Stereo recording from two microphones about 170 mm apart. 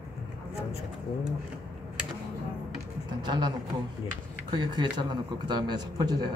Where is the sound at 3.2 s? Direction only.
25° right (ahead or behind).